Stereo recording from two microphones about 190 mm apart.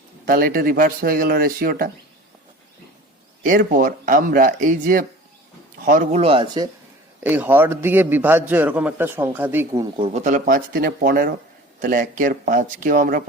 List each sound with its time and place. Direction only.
0.3 s speech: 50° right (ahead or behind)
3.4 s speech: 45° right (ahead or behind); by 6.7 s 25° right (ahead or behind)
7.3 s a man's voice: 10° right (ahead or behind)
10.0 s speech: 35° right (ahead or behind)